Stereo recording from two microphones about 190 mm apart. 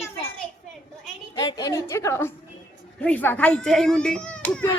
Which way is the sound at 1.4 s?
20° left (ahead or behind).